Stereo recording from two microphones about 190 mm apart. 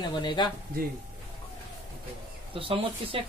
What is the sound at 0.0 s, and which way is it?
Speech, 25° left (ahead or behind).